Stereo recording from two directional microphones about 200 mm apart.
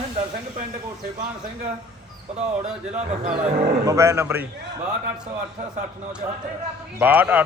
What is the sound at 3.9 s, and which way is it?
Speech, 15° right (ahead or behind).